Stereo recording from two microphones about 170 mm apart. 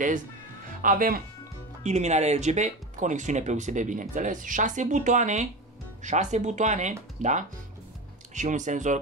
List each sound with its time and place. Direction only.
0.8 s speech: 55° right (ahead or behind)
1.8 s speech: 40° right (ahead or behind)